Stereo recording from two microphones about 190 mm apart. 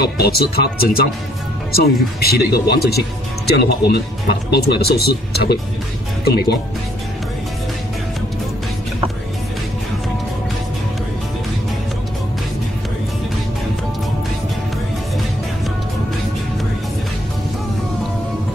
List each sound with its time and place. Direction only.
0.0 s speech: 55° left (ahead or behind)